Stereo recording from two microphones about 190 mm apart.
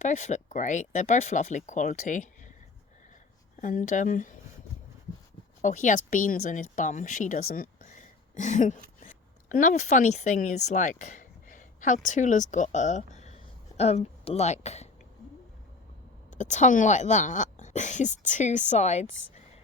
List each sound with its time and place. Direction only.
0.0 s speech: 40° left (ahead or behind)
3.6 s speech: 45° left (ahead or behind)
5.6 s speech: 40° left (ahead or behind)
16.3 s speech: 40° left (ahead or behind)